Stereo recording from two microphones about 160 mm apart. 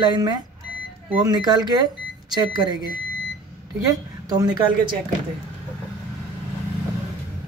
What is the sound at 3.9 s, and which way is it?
Speech, 25° right (ahead or behind).